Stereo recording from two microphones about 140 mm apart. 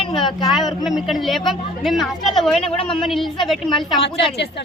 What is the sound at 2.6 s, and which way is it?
Speech, 45° left (ahead or behind).